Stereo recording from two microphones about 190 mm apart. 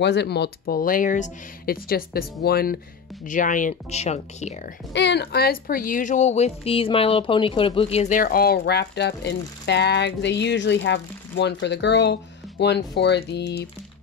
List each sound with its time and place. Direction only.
0.0 s speech: 65° left (ahead or behind)
3.3 s speech: 45° left (ahead or behind)
4.9 s speech: 65° left (ahead or behind)